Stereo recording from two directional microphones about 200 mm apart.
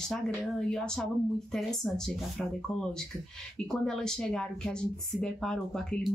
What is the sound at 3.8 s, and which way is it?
Speech, 5° left (ahead or behind).